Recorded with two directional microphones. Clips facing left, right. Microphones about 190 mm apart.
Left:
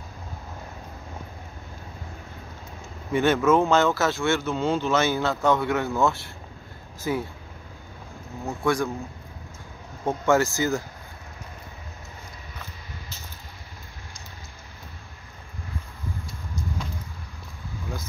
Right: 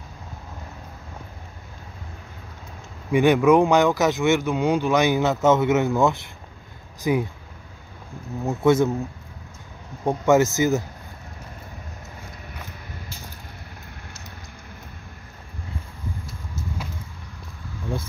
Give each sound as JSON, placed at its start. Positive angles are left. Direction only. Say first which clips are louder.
{"t": 3.1, "sound": "speech", "louder": "right 4 dB", "side_deg": -15}
{"t": 8.5, "sound": "speech", "louder": "right 6 dB", "side_deg": -20}
{"t": 10.0, "sound": "speech", "louder": "right 4 dB", "side_deg": -20}